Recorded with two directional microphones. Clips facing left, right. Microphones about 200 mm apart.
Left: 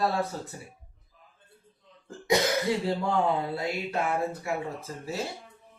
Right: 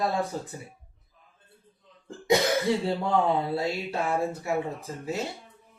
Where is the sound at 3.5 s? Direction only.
25° right (ahead or behind).